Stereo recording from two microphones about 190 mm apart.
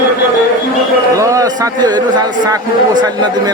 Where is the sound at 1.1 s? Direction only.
15° right (ahead or behind).